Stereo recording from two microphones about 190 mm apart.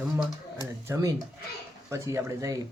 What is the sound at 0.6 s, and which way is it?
Speech, 20° right (ahead or behind).